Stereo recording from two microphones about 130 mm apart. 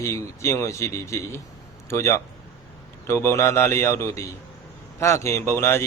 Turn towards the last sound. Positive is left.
turn(degrees=20)  # may be behind; listen again after turning